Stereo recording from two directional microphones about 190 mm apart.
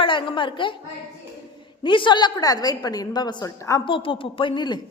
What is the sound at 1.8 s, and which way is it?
A woman's voice, 25° left (ahead or behind).